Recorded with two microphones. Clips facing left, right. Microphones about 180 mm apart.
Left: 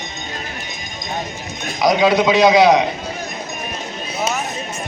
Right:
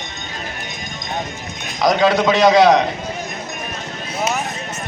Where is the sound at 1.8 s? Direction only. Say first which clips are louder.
Left 1 dB; 10° left (ahead or behind).